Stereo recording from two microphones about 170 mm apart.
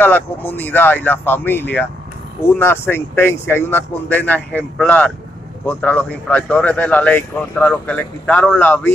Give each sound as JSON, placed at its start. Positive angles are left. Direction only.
{"t": 0.0, "sound": "speech", "side_deg": 10}